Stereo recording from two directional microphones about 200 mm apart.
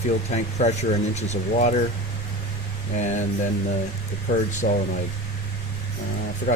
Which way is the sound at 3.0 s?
35° left (ahead or behind).